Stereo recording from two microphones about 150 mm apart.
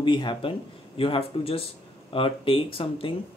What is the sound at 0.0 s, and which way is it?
Speech, 30° left (ahead or behind).